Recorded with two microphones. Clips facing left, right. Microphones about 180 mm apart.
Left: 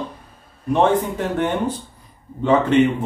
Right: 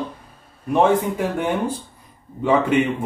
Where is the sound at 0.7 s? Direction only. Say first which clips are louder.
Even; 10° right (ahead or behind).